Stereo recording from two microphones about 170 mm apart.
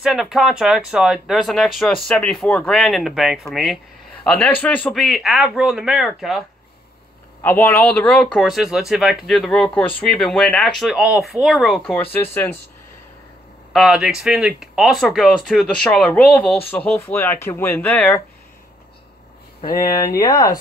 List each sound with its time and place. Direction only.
0.0 s speech: 5° right (ahead or behind)
7.4 s speech: 10° left (ahead or behind)
13.7 s speech: 5° right (ahead or behind)
19.7 s speech: 20° left (ahead or behind)